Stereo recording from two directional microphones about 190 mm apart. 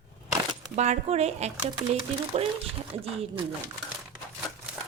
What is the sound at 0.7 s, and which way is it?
Speech, 35° right (ahead or behind).